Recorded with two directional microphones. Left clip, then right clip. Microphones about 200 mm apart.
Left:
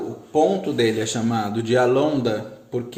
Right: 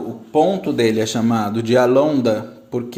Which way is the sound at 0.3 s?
35° right (ahead or behind).